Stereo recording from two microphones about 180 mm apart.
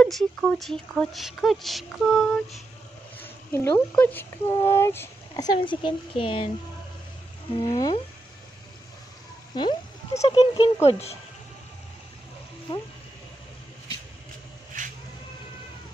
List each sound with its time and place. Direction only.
0.0 s speech: 5° left (ahead or behind)
3.2 s a sound: 10° left (ahead or behind)
3.9 s speech: 10° left (ahead or behind); by 6.5 s 30° left (ahead or behind)
7.6 s speech: 20° left (ahead or behind)
9.6 s speech: 25° left (ahead or behind)
10.2 s speech: 35° left (ahead or behind)